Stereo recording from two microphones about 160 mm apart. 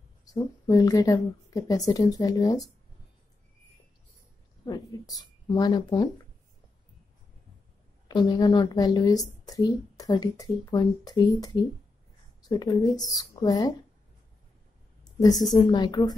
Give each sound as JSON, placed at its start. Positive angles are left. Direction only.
{"t": 0.2, "sound": "a woman's voice", "side_deg": 25}
{"t": 4.6, "sound": "speech", "side_deg": 25}
{"t": 8.1, "sound": "a woman's voice", "side_deg": 25}
{"t": 15.1, "sound": "a woman's voice", "side_deg": 25}